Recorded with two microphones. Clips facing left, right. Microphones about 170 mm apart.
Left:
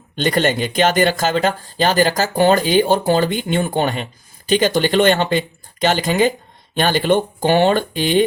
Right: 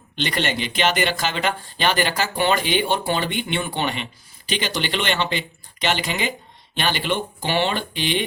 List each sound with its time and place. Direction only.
0.2 s speech: 45° left (ahead or behind)